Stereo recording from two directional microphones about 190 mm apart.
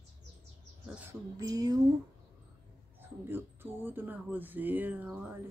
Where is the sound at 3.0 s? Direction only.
10° right (ahead or behind).